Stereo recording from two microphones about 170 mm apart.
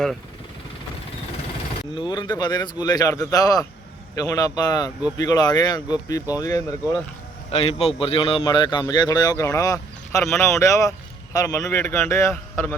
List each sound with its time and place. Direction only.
2.0 s a man's voice: 25° left (ahead or behind)
7.5 s a man's voice: 35° left (ahead or behind); by 12.7 s 15° left (ahead or behind)